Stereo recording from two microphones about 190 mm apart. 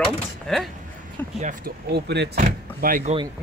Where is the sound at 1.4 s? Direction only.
45° right (ahead or behind).